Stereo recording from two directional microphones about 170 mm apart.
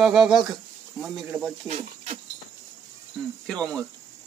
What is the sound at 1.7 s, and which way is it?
Speech, 40° right (ahead or behind).